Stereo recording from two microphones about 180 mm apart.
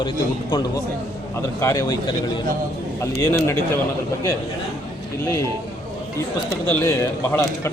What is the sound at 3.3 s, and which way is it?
Speech, 15° left (ahead or behind).